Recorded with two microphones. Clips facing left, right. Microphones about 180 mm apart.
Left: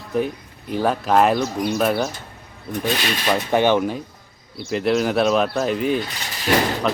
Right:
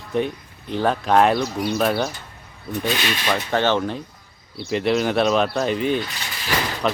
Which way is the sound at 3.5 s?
15° left (ahead or behind).